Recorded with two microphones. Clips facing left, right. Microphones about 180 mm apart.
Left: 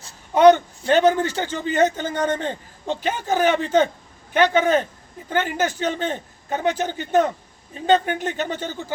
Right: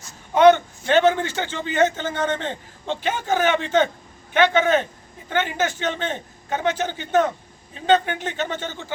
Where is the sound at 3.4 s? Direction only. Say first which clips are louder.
Left 3 dB; 40° left (ahead or behind).